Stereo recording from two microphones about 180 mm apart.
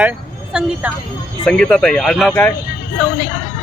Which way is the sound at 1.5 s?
5° left (ahead or behind).